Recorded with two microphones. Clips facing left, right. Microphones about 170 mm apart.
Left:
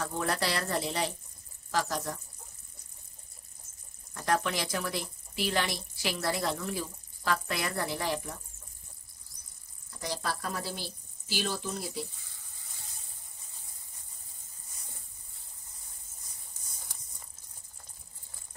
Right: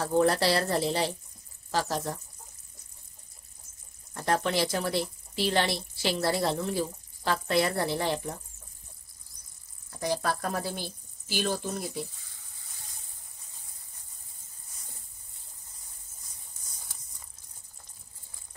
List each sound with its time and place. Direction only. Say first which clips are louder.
0.0 s speech: right 8 dB; 30° right (ahead or behind)
4.1 s speech: right 2 dB; 35° right (ahead or behind)
9.9 s a woman's voice: right 6 dB; 50° right (ahead or behind)